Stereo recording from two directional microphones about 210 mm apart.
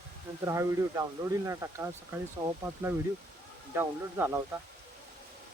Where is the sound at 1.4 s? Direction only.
15° right (ahead or behind).